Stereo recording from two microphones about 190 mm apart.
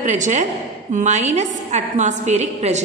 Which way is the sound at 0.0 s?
40° right (ahead or behind).